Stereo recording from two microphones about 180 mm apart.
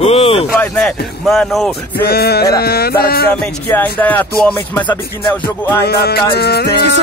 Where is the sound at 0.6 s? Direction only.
5° left (ahead or behind).